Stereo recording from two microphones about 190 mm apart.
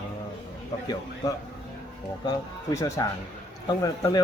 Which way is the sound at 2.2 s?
20° left (ahead or behind).